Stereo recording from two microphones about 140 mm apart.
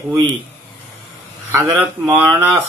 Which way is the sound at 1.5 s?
15° right (ahead or behind).